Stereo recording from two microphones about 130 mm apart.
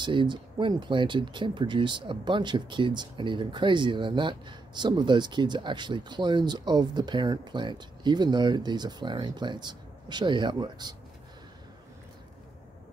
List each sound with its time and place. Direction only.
0.0 s speech: 40° right (ahead or behind)